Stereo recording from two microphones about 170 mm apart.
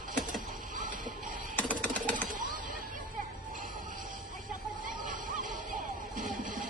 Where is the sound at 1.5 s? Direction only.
10° left (ahead or behind).